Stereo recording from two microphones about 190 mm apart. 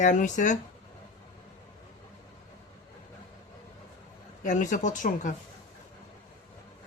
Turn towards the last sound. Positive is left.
turn(degrees=40)  # may be behind; listen again after turning